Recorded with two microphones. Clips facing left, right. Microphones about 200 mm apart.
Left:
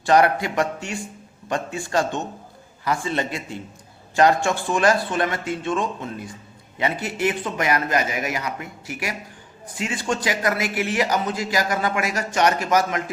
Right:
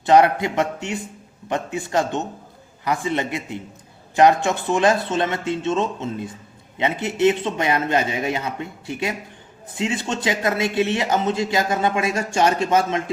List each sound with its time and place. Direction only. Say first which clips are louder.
0.0 s a man's voice: right 2 dB; 20° right (ahead or behind)